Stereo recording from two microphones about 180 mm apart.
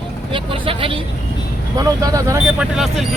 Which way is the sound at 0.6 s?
30° right (ahead or behind).